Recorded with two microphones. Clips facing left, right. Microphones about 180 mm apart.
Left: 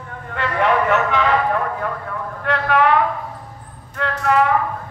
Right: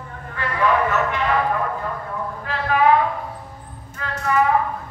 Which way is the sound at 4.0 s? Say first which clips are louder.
Left 3 dB; 70° left (ahead or behind).